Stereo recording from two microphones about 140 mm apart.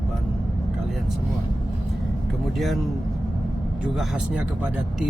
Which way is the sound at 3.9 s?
Centre (ahead or behind).